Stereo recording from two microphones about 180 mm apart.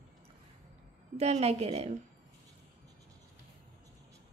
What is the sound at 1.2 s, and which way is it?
Speech, 35° right (ahead or behind).